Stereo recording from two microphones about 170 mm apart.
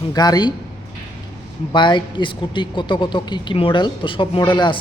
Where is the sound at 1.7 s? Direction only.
25° left (ahead or behind).